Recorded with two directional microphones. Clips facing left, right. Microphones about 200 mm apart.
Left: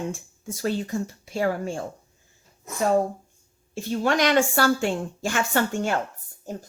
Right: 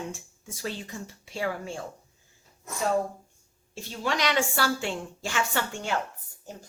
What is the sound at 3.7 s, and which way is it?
A woman's voice, 50° left (ahead or behind).